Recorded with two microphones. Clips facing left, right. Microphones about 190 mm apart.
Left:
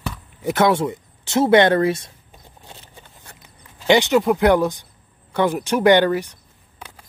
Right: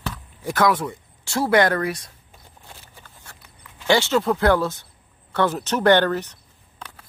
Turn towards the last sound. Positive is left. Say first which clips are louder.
# left 2 dB
turn(degrees=10)  # may be behind; listen again after turning